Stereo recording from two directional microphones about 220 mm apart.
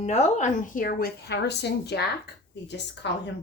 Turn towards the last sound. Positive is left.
turn(degrees=50)  # may be behind; listen again after turning